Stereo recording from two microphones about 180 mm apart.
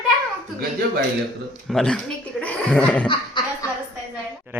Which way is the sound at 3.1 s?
25° left (ahead or behind).